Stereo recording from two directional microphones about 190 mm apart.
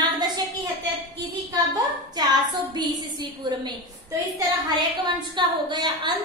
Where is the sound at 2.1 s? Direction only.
20° right (ahead or behind).